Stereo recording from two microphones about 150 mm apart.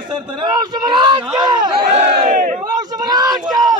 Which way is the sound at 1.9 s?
50° right (ahead or behind).